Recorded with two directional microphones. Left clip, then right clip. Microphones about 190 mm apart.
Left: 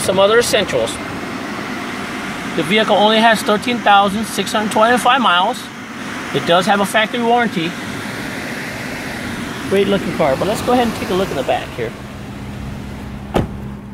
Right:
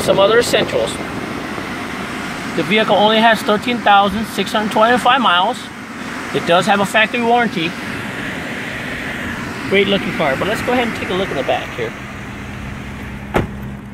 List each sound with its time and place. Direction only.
0.1 s speech: 10° left (ahead or behind)
2.7 s speech: 10° left (ahead or behind)
9.8 s speech: 15° left (ahead or behind)